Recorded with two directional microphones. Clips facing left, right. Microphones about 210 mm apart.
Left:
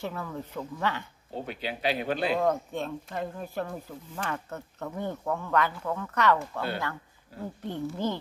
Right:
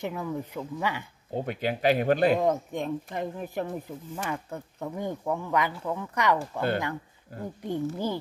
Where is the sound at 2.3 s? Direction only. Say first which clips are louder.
Right 1 dB; 15° right (ahead or behind).